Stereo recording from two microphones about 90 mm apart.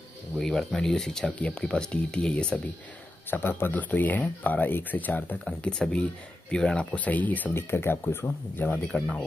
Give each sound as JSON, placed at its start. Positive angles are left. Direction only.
{"t": 0.4, "sound": "speech", "side_deg": 5}
{"t": 3.3, "sound": "speech", "side_deg": 25}
{"t": 5.4, "sound": "speech", "side_deg": 10}
{"t": 8.8, "sound": "speech", "side_deg": 5}